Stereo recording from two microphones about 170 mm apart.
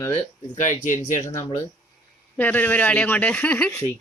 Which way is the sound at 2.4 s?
10° left (ahead or behind).